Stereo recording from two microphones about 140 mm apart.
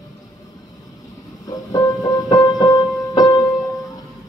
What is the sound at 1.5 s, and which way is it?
Music, 25° left (ahead or behind).